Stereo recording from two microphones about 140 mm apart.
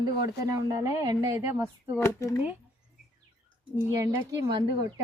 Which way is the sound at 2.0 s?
20° left (ahead or behind).